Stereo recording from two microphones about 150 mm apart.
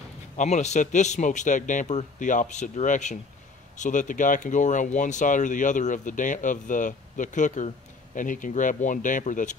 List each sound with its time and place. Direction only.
0.4 s speech: 50° left (ahead or behind)